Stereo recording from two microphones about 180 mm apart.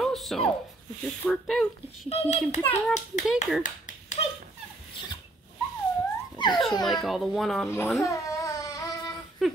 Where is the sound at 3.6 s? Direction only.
40° left (ahead or behind).